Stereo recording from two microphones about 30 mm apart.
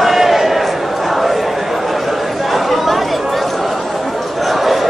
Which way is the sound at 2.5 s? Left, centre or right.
Centre.